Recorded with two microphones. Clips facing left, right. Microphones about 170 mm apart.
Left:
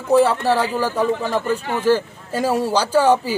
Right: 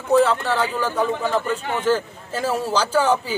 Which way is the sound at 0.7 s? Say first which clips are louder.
Left 3 dB; 35° left (ahead or behind).